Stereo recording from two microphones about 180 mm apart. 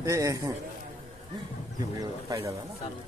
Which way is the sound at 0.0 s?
15° right (ahead or behind).